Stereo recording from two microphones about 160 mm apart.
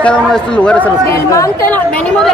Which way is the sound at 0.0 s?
5° left (ahead or behind).